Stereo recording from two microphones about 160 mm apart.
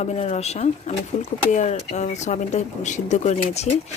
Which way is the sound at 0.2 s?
40° left (ahead or behind).